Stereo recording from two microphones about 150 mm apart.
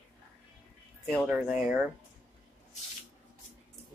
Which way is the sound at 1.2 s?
5° right (ahead or behind).